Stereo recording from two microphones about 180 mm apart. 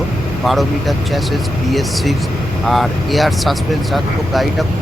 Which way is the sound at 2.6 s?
Centre (ahead or behind).